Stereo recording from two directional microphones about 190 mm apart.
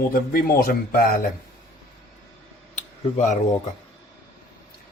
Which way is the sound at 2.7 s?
40° left (ahead or behind).